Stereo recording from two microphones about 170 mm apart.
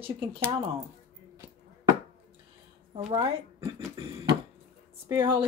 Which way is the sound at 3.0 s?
35° right (ahead or behind).